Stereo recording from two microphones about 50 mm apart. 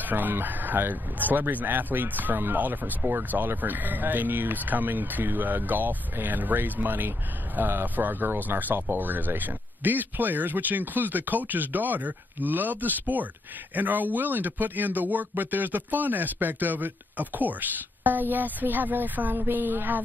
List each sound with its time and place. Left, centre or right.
0.0 s speech: right